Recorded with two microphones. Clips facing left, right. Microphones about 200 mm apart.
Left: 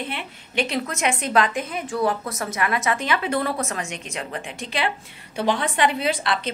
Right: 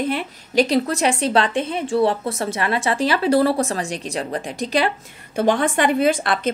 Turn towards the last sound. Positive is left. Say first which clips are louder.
# right 6 dB
turn(degrees=-50)  # may be behind; listen again after turning